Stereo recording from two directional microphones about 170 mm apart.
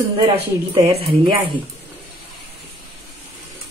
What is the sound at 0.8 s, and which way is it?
Speech, 35° right (ahead or behind).